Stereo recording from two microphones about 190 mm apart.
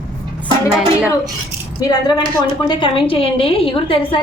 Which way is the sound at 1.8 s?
20° left (ahead or behind).